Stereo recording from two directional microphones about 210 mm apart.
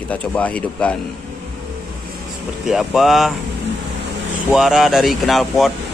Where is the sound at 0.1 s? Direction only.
5° left (ahead or behind).